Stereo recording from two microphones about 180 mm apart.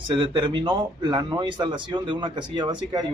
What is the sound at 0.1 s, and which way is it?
Speech, 30° right (ahead or behind).